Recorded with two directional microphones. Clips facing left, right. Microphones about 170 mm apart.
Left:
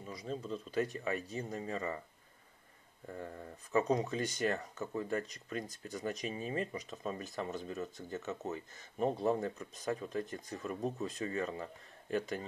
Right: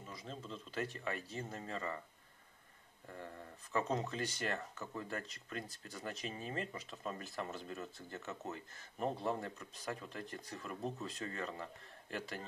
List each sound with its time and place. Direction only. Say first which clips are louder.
0.1 s speech: left 8 dB; 15° left (ahead or behind)
3.2 s speech: left 4 dB; 20° left (ahead or behind)